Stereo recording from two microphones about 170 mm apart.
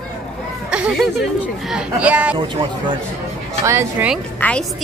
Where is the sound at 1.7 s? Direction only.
10° right (ahead or behind).